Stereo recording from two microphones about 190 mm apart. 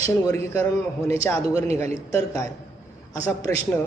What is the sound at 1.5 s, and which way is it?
Speech, 35° right (ahead or behind).